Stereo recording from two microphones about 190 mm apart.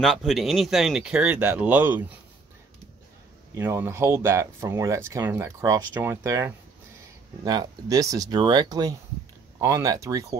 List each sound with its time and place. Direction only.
0.0 s speech: centre (ahead or behind)
3.5 s speech: 10° right (ahead or behind)